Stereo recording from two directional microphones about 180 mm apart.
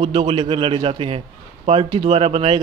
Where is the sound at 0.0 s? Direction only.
30° right (ahead or behind).